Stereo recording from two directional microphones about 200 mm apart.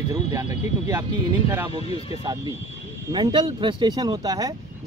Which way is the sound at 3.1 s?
20° right (ahead or behind).